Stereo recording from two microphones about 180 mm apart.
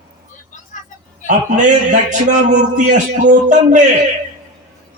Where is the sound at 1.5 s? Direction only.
45° right (ahead or behind).